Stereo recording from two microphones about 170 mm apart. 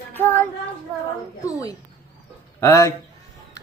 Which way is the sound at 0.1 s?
10° left (ahead or behind).